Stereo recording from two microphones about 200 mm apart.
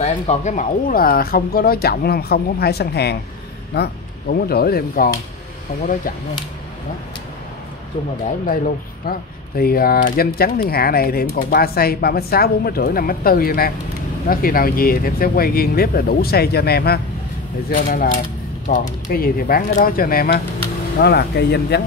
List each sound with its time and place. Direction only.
0.0 s speech: 35° left (ahead or behind)
8.5 s speech: 40° left (ahead or behind)